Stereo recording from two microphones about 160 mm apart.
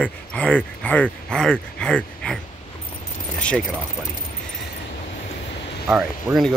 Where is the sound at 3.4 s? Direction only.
5° left (ahead or behind).